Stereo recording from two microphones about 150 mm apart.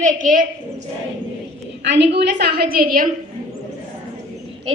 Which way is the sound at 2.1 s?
90° right.